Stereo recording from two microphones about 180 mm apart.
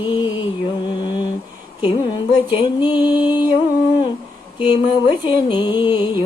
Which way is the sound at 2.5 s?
25° left (ahead or behind).